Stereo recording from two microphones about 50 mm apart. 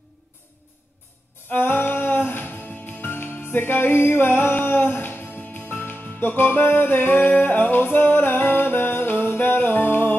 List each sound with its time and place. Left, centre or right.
1.5 s music: left